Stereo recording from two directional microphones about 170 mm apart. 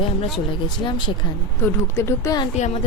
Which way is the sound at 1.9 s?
15° left (ahead or behind).